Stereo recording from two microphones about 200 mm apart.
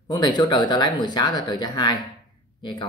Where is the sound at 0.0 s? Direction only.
20° left (ahead or behind).